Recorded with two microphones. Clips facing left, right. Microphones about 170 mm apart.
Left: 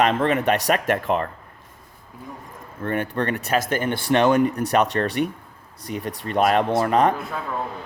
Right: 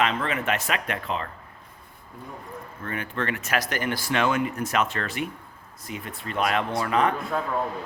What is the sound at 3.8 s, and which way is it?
A man's voice, 30° left (ahead or behind).